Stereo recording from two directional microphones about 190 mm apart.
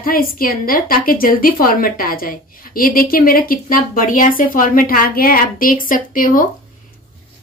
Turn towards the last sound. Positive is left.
turn(degrees=45)  # may be behind; listen again after turning